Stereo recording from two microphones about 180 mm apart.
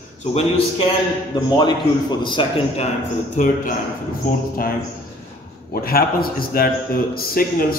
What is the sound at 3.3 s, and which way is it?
A man's voice, 50° left (ahead or behind).